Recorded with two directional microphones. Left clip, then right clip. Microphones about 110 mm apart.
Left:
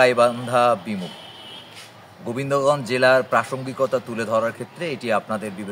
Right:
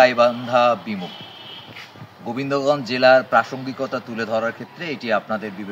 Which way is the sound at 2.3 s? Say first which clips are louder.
Even; 35° left (ahead or behind).